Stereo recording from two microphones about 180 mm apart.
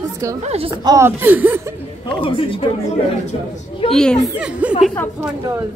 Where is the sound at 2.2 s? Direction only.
30° left (ahead or behind).